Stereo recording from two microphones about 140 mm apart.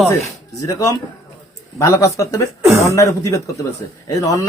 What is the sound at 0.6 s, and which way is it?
A man's voice, 25° left (ahead or behind).